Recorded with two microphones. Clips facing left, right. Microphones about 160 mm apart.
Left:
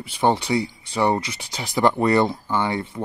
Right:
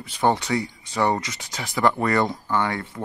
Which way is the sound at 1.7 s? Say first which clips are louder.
Left 2 dB; 30° left (ahead or behind).